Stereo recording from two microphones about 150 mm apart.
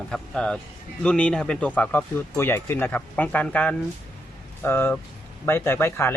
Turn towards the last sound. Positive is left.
turn(degrees=15)  # may be behind; listen again after turning